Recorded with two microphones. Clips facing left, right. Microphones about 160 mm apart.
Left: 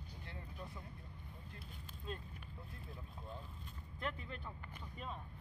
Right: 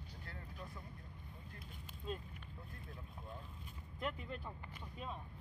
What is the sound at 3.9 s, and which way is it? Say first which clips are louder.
Speech: right 2 dB; 5° right (ahead or behind).